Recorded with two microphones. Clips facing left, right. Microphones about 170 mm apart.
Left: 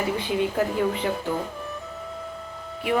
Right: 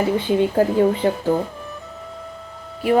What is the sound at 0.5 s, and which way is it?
Speech, 30° right (ahead or behind).